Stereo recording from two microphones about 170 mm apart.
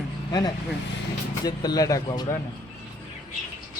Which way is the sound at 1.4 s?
25° left (ahead or behind).